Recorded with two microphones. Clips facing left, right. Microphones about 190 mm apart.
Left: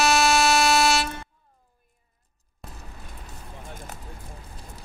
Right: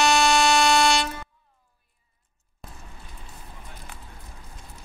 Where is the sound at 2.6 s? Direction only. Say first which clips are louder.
Left 2 dB; centre (ahead or behind).